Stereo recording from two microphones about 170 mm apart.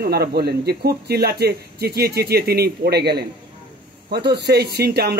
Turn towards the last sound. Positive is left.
turn(degrees=-70)  # may be behind; listen again after turning